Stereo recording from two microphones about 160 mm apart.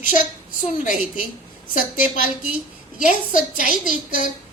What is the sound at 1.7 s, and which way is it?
A woman's voice, 55° left (ahead or behind).